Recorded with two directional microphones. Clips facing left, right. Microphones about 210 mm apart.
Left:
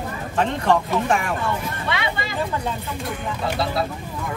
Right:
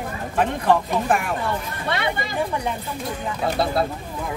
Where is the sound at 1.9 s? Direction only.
55° right (ahead or behind).